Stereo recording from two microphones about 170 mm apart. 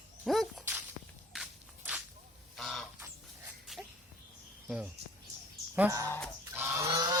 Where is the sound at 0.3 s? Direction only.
Centre (ahead or behind).